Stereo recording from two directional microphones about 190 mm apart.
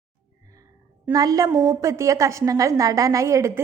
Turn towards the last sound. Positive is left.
turn(degrees=-15)  # may be behind; listen again after turning